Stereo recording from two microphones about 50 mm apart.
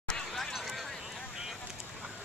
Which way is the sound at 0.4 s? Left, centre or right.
Centre.